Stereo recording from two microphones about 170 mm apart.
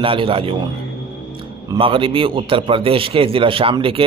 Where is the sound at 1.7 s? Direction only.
30° right (ahead or behind).